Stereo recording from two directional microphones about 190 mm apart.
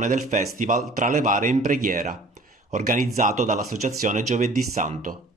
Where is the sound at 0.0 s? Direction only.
40° right (ahead or behind).